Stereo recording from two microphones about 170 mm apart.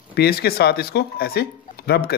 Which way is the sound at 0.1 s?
70° left (ahead or behind).